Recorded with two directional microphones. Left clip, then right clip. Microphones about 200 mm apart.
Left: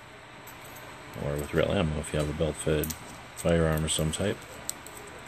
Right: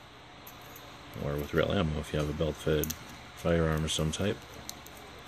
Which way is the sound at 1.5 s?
20° right (ahead or behind).